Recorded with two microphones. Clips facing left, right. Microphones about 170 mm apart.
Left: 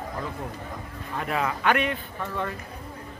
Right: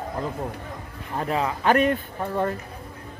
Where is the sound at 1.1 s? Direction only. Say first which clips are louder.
Right 3 dB; 30° right (ahead or behind).